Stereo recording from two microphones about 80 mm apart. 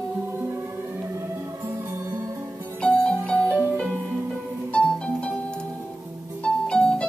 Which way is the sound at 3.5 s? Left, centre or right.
Right.